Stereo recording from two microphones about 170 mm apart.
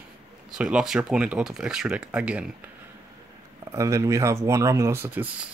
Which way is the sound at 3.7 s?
20° right (ahead or behind).